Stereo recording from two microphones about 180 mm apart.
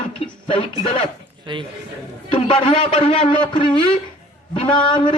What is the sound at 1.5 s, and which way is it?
Speech, 25° right (ahead or behind).